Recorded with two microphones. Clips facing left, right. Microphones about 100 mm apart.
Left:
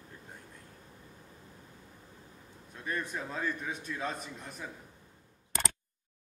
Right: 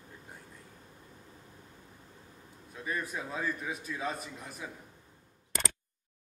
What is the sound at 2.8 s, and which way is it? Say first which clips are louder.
A man's voice: even; 5° right (ahead or behind).